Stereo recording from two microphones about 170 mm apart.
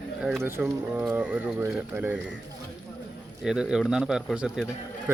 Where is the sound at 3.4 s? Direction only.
5° right (ahead or behind).